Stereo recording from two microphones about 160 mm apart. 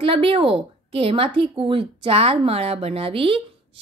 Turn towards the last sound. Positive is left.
turn(degrees=-35)  # may be behind; listen again after turning